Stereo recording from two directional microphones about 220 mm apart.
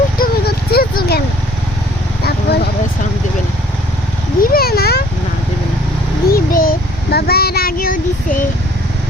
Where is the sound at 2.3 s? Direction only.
45° left (ahead or behind).